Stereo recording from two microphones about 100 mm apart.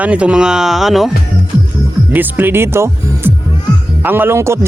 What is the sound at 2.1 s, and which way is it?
A man's voice, 20° right (ahead or behind).